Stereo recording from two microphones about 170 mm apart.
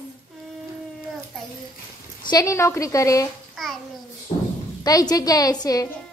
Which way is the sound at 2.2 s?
20° left (ahead or behind).